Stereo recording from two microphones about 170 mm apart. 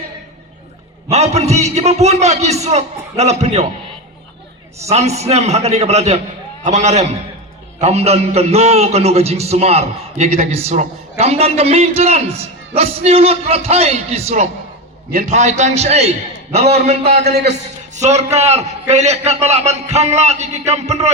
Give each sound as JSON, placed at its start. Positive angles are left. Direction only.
{"t": 1.1, "sound": "a man's voice", "side_deg": -40}
{"t": 4.9, "sound": "a man's voice", "side_deg": -40}
{"t": 17.2, "sound": "a man's voice", "side_deg": -70}
{"t": 17.5, "sound": "a man's voice", "side_deg": -40}